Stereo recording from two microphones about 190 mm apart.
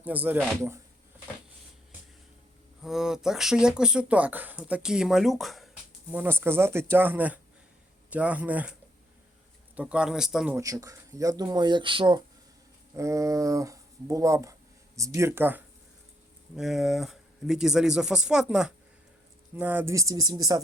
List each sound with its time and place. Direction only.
0.0 s speech: 10° right (ahead or behind)
2.8 s speech: 5° right (ahead or behind)
9.7 s speech: 5° right (ahead or behind)
10.6 s speech: 15° right (ahead or behind)